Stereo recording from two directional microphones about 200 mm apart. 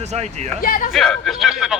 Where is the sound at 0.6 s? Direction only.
45° left (ahead or behind).